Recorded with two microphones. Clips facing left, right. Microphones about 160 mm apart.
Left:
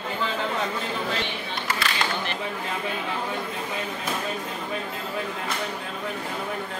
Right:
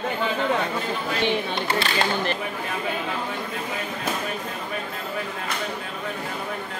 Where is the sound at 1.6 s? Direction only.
30° right (ahead or behind).